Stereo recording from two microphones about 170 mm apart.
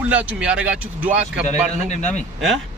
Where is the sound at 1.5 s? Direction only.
45° left (ahead or behind).